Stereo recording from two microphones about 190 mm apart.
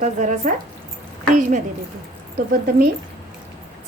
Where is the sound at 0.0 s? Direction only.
40° right (ahead or behind).